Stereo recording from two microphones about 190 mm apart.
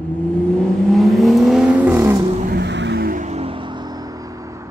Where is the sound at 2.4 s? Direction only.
60° right (ahead or behind).